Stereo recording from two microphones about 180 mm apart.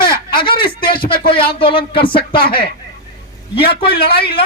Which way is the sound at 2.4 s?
55° left (ahead or behind).